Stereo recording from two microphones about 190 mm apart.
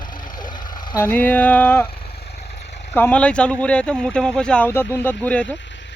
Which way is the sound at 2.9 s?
10° left (ahead or behind).